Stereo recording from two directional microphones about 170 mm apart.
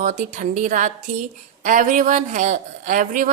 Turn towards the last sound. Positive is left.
turn(degrees=-50)  # may be behind; listen again after turning